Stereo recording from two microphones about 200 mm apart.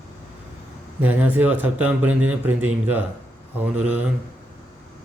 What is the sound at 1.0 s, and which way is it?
A man's voice, 10° right (ahead or behind).